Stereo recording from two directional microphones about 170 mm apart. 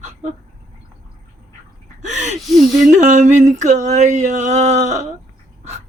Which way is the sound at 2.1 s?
45° right (ahead or behind).